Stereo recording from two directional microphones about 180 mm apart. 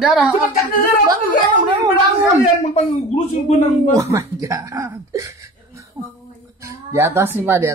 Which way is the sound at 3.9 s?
15° right (ahead or behind).